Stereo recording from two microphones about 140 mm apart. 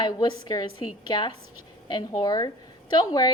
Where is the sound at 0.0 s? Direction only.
30° left (ahead or behind).